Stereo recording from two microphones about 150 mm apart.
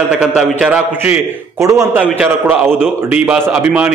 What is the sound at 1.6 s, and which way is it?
A man's voice, 20° right (ahead or behind).